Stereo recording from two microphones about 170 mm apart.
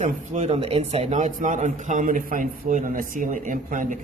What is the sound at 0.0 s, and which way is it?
A man's voice, 40° right (ahead or behind).